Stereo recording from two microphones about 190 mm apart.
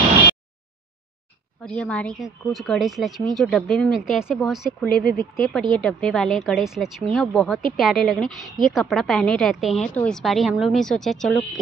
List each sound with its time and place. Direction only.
1.6 s speech: 5° left (ahead or behind)
4.8 s speech: 50° left (ahead or behind)
5.3 s speech: centre (ahead or behind)